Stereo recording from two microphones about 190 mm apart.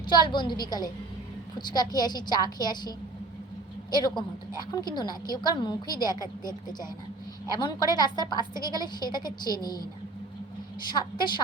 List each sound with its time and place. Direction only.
0.0 s a woman's voice: 20° left (ahead or behind)
3.9 s a woman's voice: 20° left (ahead or behind)
10.8 s a woman's voice: 25° left (ahead or behind)